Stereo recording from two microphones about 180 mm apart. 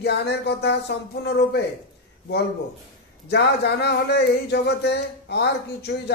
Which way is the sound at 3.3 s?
65° left (ahead or behind).